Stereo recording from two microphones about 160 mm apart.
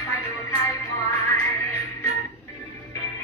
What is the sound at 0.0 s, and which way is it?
Music, 20° left (ahead or behind).